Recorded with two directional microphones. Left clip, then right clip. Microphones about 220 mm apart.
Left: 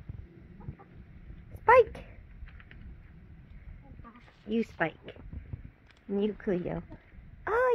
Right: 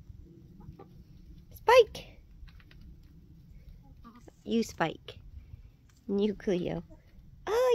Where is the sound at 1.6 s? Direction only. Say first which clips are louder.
Even; 15° right (ahead or behind).